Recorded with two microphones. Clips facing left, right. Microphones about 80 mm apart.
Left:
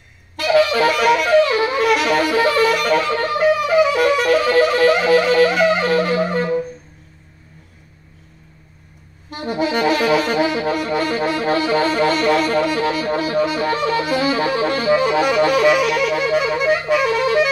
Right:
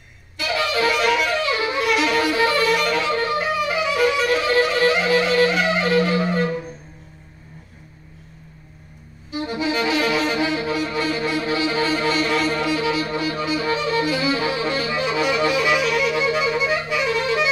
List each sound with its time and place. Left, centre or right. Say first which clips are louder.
0.4 s saxophone: left 7 dB; left
3.6 s music: left 5 dB; left
9.3 s saxophone: left 3 dB; left
13.8 s music: left 3 dB; left